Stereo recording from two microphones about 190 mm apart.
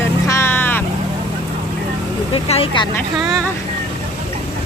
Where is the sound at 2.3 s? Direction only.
30° left (ahead or behind).